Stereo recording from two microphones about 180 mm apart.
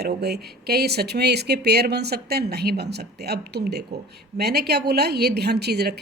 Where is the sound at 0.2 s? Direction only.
65° right (ahead or behind).